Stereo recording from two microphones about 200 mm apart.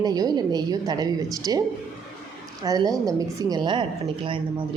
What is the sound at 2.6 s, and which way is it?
Speech, 20° right (ahead or behind).